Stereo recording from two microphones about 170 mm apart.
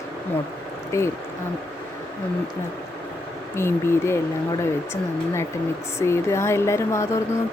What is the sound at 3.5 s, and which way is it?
Speech, 15° left (ahead or behind).